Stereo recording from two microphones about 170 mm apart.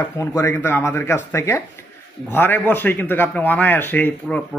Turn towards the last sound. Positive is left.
turn(degrees=10)  # may be behind; listen again after turning